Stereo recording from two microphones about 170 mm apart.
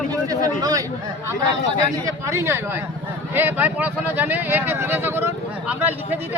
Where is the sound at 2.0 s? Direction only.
15° right (ahead or behind).